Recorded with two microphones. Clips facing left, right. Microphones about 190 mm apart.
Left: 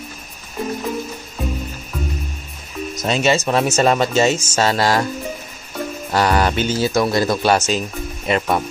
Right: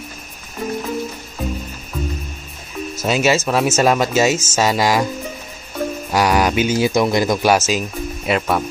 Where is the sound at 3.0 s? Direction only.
5° right (ahead or behind).